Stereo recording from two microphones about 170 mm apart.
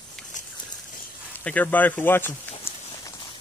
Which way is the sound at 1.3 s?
10° left (ahead or behind).